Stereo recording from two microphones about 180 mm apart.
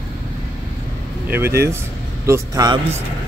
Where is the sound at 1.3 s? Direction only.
15° right (ahead or behind).